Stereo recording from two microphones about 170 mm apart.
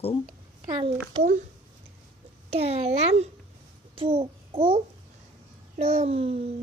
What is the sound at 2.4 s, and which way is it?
A child's voice, 35° right (ahead or behind).